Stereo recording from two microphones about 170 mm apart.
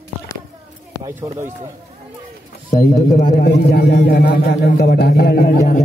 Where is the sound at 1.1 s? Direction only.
10° right (ahead or behind).